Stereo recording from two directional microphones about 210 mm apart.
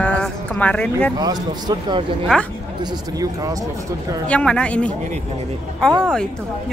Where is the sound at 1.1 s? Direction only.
20° right (ahead or behind).